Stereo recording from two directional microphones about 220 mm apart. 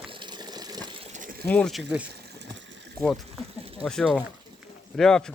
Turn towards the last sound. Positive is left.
turn(degrees=5)  # may be behind; listen again after turning